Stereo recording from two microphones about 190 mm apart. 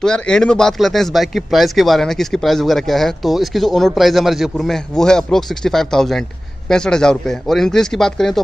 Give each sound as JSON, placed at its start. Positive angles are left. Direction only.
{"t": 0.0, "sound": "speech", "side_deg": 5}